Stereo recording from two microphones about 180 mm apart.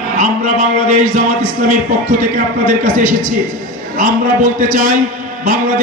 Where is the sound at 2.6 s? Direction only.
45° right (ahead or behind).